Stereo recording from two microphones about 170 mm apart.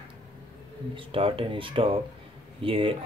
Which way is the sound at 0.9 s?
30° right (ahead or behind).